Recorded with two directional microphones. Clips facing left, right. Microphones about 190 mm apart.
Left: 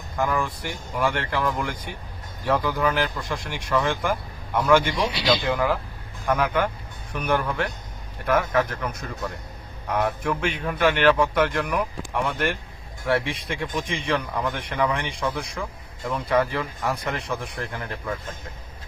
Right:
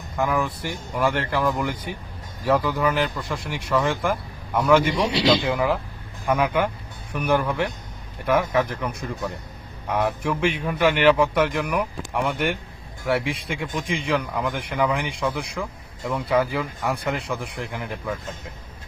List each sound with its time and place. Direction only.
0.2 s speech: 5° right (ahead or behind)
5.0 s speech: 25° right (ahead or behind)
5.5 s a man's voice: 5° right (ahead or behind)